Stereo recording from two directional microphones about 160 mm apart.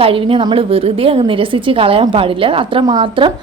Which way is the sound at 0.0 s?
35° right (ahead or behind).